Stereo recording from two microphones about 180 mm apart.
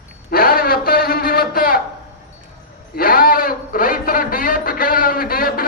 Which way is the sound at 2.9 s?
55° left (ahead or behind).